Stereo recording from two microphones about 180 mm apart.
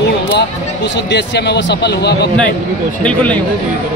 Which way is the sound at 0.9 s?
70° left (ahead or behind).